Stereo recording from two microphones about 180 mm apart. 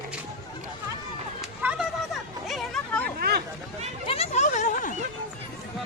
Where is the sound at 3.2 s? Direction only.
60° right (ahead or behind).